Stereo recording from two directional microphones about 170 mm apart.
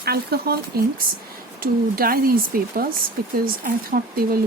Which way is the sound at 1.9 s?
60° right (ahead or behind).